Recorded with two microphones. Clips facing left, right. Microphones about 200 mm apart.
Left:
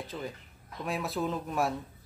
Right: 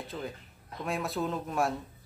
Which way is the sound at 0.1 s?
Centre (ahead or behind).